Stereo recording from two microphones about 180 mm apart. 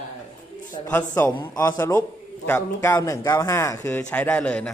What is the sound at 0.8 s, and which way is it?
A man's voice, 30° left (ahead or behind).